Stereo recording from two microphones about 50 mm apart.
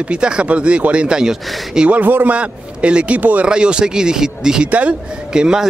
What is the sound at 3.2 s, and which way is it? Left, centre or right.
Speech, right.